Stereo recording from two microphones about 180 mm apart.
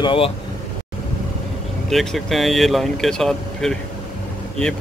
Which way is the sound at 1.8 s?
Centre (ahead or behind).